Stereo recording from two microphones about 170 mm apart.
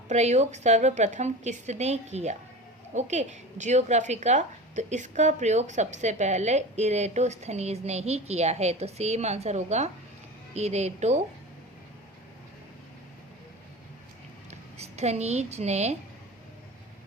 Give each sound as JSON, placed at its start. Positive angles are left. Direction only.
{"t": 0.1, "sound": "a woman's voice", "side_deg": -40}
{"t": 14.8, "sound": "a woman's voice", "side_deg": -40}